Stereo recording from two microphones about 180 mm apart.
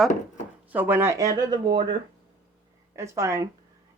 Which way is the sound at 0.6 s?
10° right (ahead or behind).